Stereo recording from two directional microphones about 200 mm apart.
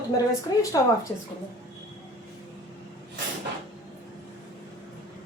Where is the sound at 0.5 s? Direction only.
20° left (ahead or behind).